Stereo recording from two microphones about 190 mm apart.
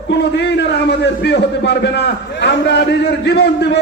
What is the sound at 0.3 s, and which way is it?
A man's voice, 65° left (ahead or behind).